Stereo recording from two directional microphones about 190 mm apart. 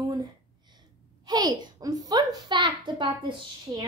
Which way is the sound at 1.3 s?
20° right (ahead or behind).